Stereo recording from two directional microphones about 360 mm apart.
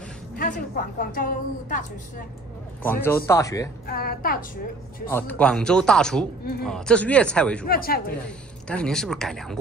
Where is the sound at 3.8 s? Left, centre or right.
Left.